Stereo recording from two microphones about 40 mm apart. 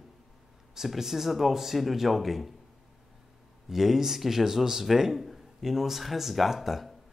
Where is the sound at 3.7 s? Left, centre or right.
Centre.